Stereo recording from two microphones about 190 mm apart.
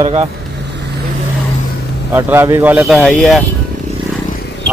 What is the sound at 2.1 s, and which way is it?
Speech, 10° right (ahead or behind).